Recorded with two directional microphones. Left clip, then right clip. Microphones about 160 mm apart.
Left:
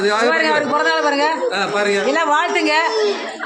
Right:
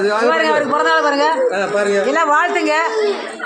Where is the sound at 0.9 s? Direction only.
10° right (ahead or behind).